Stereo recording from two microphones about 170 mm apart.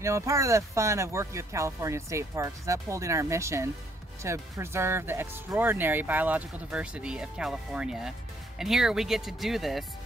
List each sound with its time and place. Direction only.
0.0 s speech: 15° right (ahead or behind); by 9.8 s centre (ahead or behind)